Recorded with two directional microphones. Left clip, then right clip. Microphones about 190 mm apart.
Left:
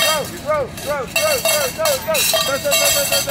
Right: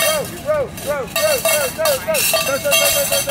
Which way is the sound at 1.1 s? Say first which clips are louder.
Even; 20° right (ahead or behind).